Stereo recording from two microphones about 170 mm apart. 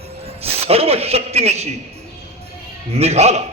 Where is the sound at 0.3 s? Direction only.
35° right (ahead or behind).